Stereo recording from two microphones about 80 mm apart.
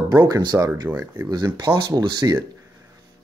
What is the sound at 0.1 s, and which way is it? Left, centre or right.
Speech, right.